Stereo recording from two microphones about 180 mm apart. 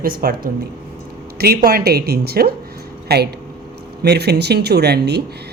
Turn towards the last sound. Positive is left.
turn(degrees=-65)  # may be behind; listen again after turning